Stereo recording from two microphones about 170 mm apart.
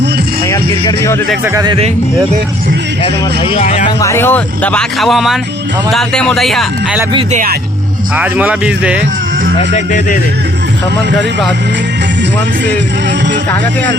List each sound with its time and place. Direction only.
0.5 s speech: 15° left (ahead or behind)
1.5 s a man's voice: 25° right (ahead or behind)
3.6 s speech: 45° left (ahead or behind)
4.0 s speech: 15° left (ahead or behind)
8.1 s speech: 10° right (ahead or behind)
9.7 s speech: 45° left (ahead or behind)